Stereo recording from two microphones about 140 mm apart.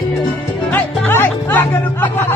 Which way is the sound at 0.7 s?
15° left (ahead or behind).